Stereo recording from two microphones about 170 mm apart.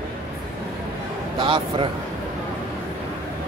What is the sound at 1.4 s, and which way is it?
Speech, 30° right (ahead or behind).